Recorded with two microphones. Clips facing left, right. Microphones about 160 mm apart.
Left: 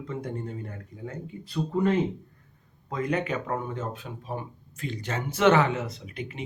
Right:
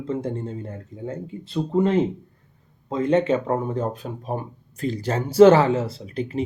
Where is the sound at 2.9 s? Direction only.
25° right (ahead or behind).